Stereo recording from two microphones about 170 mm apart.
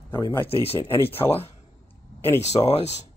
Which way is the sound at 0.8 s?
15° left (ahead or behind).